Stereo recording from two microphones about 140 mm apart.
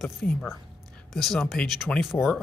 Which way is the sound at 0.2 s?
10° left (ahead or behind).